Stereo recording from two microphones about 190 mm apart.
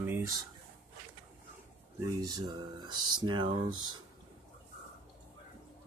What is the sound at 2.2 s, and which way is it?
Speech, 20° right (ahead or behind).